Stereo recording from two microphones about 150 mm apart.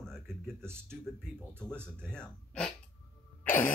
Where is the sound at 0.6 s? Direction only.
15° right (ahead or behind).